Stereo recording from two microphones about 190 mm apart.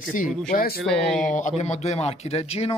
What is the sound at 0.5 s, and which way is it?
Speech, 50° left (ahead or behind).